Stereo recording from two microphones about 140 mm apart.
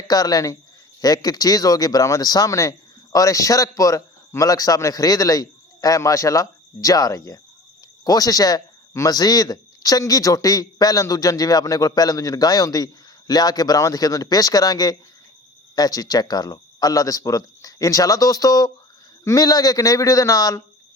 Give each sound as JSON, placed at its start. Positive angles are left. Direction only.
{"t": 0.1, "sound": "speech", "side_deg": 25}